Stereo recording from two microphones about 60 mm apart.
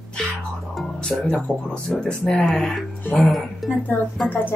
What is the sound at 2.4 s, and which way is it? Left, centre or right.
Speech, centre.